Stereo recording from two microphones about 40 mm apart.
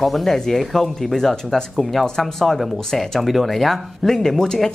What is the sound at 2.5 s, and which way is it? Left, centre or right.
Speech, centre.